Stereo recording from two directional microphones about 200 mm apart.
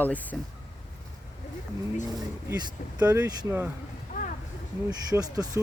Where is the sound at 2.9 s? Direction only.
15° right (ahead or behind).